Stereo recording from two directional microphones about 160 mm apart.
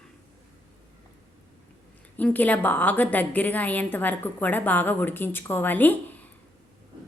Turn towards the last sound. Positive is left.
turn(degrees=10)  # may be behind; listen again after turning